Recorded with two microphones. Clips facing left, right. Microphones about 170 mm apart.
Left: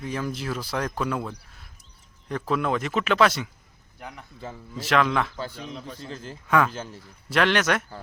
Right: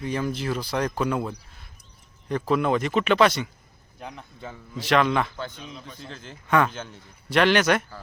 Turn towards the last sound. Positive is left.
turn(degrees=0)  # may be behind; listen again after turning